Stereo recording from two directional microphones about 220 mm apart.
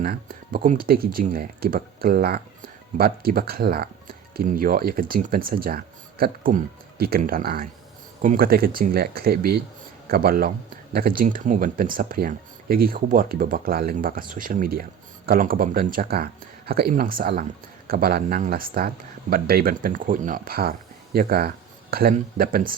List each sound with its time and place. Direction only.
0.0 s speech: 40° right (ahead or behind)